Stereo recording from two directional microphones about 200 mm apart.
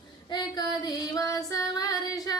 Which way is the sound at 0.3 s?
20° left (ahead or behind).